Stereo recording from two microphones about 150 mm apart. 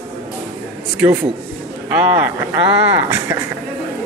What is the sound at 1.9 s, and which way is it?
Speech, 10° right (ahead or behind).